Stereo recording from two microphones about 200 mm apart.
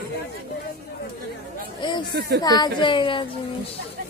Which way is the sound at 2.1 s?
50° right (ahead or behind).